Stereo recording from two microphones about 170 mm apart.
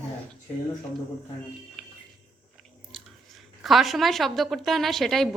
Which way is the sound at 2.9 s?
Centre (ahead or behind).